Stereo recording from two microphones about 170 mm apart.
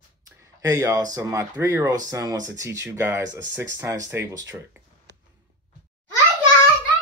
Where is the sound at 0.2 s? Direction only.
20° right (ahead or behind).